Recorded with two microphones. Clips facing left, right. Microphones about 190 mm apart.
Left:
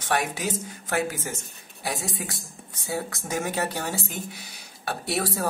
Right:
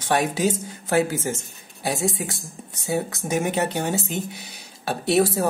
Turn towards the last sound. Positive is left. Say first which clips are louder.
# right 8 dB
turn(degrees=-25)  # may be behind; listen again after turning